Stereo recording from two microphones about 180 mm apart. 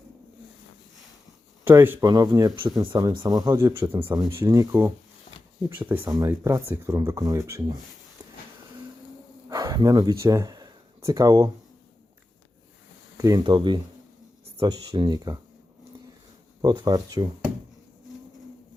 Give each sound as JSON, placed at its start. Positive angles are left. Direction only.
{"t": 1.6, "sound": "speech", "side_deg": -10}
{"t": 9.5, "sound": "speech", "side_deg": -20}
{"t": 13.1, "sound": "speech", "side_deg": -20}
{"t": 16.6, "sound": "speech", "side_deg": -20}